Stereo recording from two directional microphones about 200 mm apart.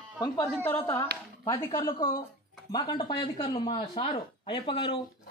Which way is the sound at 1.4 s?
15° left (ahead or behind).